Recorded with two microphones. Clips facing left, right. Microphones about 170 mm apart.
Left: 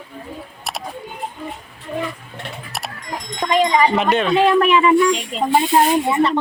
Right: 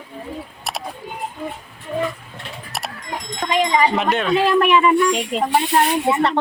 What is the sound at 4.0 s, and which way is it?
Speech, centre (ahead or behind).